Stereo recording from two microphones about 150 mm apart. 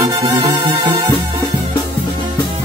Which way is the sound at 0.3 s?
35° right (ahead or behind).